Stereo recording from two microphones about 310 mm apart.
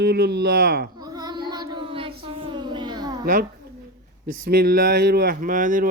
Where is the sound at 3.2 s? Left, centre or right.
Right.